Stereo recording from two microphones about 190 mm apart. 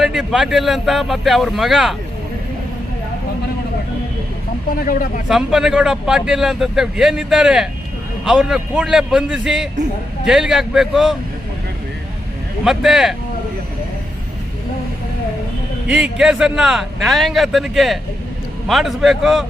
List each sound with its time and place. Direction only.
0.0 s speech: centre (ahead or behind)
4.8 s speech: 45° left (ahead or behind)
5.3 s speech: 5° right (ahead or behind)
12.6 s speech: centre (ahead or behind)
15.9 s speech: 5° right (ahead or behind)